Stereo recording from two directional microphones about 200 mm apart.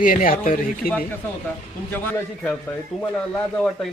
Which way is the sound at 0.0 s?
40° left (ahead or behind).